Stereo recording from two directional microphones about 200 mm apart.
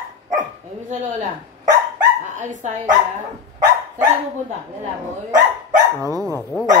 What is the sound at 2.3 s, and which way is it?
Speech, 40° right (ahead or behind).